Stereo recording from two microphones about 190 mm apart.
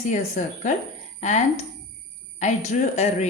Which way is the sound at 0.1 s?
40° left (ahead or behind).